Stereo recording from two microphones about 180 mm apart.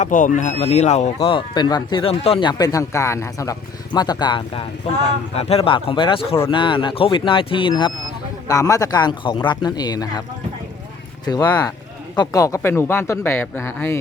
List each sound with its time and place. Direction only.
0.0 s speech: 45° left (ahead or behind)
1.2 s speech: 25° left (ahead or behind)
12.1 s speech: 20° left (ahead or behind)